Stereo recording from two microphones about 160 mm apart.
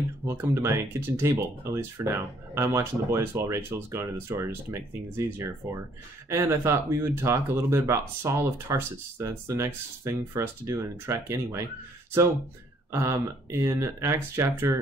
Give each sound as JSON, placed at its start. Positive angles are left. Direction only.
{"t": 0.2, "sound": "speech", "side_deg": -20}
{"t": 12.9, "sound": "speech", "side_deg": -15}